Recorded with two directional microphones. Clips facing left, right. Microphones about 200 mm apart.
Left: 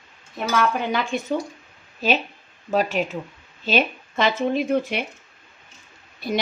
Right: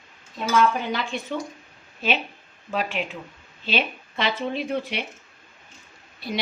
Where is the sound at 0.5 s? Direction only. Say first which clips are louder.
Even; 45° left (ahead or behind).